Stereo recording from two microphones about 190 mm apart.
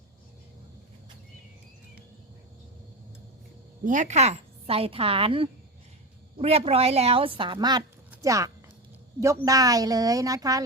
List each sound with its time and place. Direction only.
3.8 s a woman's voice: 40° right (ahead or behind); by 10.6 s 20° right (ahead or behind)